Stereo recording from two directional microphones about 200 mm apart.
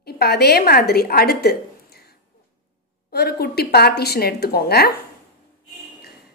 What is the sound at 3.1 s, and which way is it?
A woman's voice, 55° left (ahead or behind).